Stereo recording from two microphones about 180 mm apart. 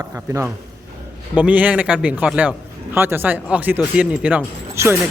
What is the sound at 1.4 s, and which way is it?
A man's voice, 10° right (ahead or behind).